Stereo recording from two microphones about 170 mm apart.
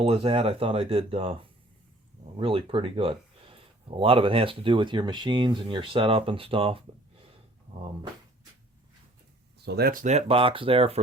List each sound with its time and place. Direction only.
0.0 s speech: 35° right (ahead or behind)
9.6 s speech: 70° right (ahead or behind)
10.0 s speech: 40° right (ahead or behind)